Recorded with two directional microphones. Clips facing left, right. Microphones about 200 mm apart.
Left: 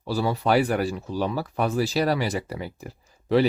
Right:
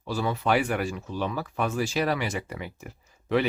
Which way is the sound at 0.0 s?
35° left (ahead or behind).